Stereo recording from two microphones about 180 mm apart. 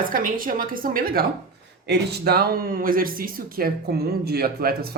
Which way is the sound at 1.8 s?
65° right (ahead or behind).